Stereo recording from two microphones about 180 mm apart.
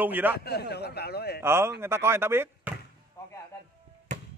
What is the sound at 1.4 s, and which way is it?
A man's voice, 15° right (ahead or behind).